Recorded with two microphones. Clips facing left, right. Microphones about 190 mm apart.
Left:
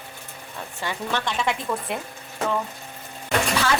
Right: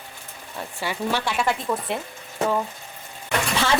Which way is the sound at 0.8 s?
10° right (ahead or behind).